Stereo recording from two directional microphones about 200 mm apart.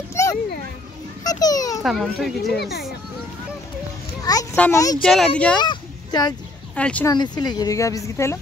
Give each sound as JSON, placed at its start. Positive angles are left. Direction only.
{"t": 0.1, "sound": "children playing", "side_deg": 15}
{"t": 1.2, "sound": "a child's voice", "side_deg": 20}
{"t": 1.8, "sound": "speech", "side_deg": 0}
{"t": 4.2, "sound": "a child's voice", "side_deg": 15}
{"t": 5.6, "sound": "a sound", "side_deg": 20}
{"t": 6.7, "sound": "speech", "side_deg": 5}
{"t": 7.1, "sound": "a woman's voice", "side_deg": 20}